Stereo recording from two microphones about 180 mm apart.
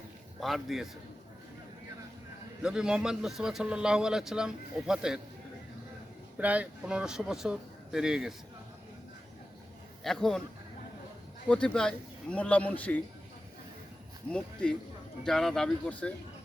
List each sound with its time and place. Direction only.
0.3 s a man's voice: centre (ahead or behind)
2.6 s a man's voice: 5° right (ahead or behind)
6.4 s a man's voice: 10° right (ahead or behind)
10.0 s a man's voice: centre (ahead or behind)
11.4 s a man's voice: 5° left (ahead or behind)
14.3 s a man's voice: 5° left (ahead or behind)